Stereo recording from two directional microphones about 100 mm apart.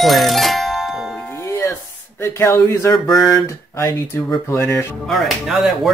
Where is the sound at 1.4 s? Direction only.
30° left (ahead or behind).